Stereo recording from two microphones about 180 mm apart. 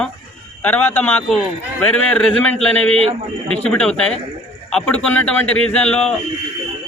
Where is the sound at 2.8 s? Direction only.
35° right (ahead or behind).